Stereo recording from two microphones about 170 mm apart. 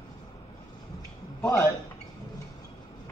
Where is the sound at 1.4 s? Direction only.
15° left (ahead or behind).